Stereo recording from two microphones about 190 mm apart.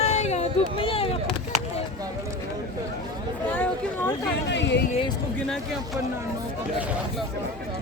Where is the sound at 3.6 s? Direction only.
10° left (ahead or behind).